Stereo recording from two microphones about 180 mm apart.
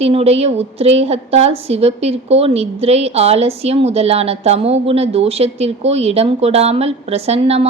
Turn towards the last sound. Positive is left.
turn(degrees=-35)  # may be behind; listen again after turning